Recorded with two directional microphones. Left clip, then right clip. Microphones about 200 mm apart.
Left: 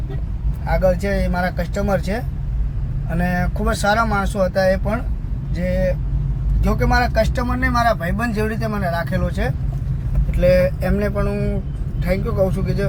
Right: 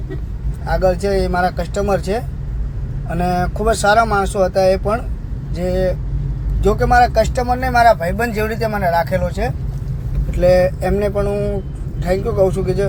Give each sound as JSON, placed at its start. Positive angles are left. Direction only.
{"t": 0.7, "sound": "speech", "side_deg": 0}